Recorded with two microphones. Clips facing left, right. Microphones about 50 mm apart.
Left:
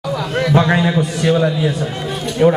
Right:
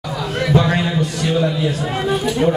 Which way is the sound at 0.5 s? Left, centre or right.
Left.